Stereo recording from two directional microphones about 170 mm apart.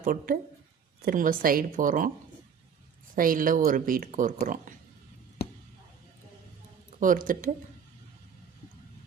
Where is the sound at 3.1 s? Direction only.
55° right (ahead or behind).